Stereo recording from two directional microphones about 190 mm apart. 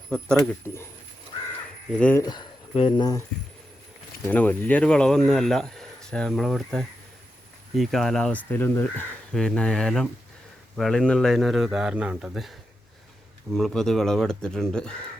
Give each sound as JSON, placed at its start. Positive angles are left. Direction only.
{"t": 0.1, "sound": "speech", "side_deg": 5}
{"t": 1.9, "sound": "speech", "side_deg": 5}
{"t": 2.2, "sound": "speech", "side_deg": 20}
{"t": 4.3, "sound": "speech", "side_deg": 10}